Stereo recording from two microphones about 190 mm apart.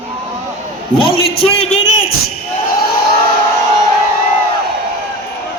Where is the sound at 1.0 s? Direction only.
30° left (ahead or behind).